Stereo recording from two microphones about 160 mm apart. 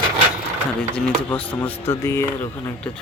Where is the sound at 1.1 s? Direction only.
10° left (ahead or behind).